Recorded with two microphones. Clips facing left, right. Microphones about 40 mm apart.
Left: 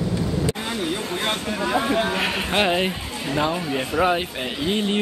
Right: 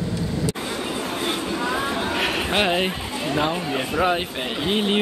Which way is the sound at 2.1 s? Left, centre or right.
Centre.